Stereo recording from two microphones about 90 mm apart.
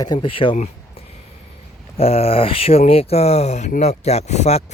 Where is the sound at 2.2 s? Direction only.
90° left.